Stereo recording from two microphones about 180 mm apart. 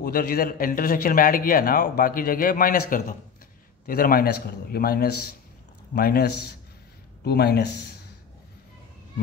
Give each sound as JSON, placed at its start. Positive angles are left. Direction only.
{"t": 0.0, "sound": "a man's voice", "side_deg": 55}